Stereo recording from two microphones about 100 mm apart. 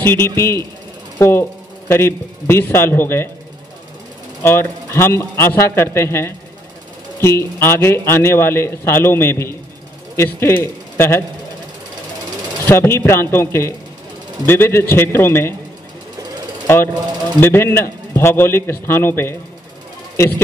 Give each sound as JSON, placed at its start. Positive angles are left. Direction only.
{"t": 0.0, "sound": "a man's voice", "side_deg": 25}
{"t": 4.4, "sound": "a man's voice", "side_deg": 25}
{"t": 12.6, "sound": "a man's voice", "side_deg": 25}
{"t": 16.6, "sound": "a man's voice", "side_deg": 25}